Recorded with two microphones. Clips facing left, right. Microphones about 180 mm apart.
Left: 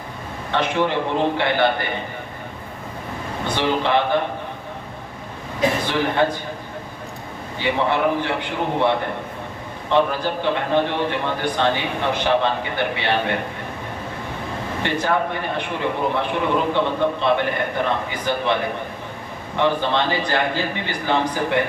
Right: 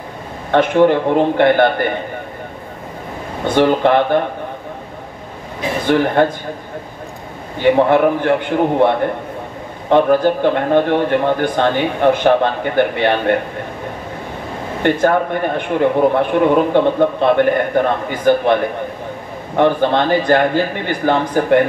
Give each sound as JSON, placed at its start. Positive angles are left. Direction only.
{"t": 0.5, "sound": "speech", "side_deg": -50}
{"t": 3.4, "sound": "speech", "side_deg": -50}
{"t": 6.2, "sound": "speech", "side_deg": -50}
{"t": 7.6, "sound": "speech", "side_deg": -50}
{"t": 14.8, "sound": "speech", "side_deg": -50}